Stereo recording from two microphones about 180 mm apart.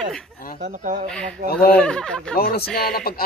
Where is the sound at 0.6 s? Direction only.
45° right (ahead or behind).